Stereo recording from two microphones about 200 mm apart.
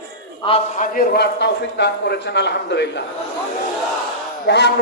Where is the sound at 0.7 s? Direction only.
45° left (ahead or behind).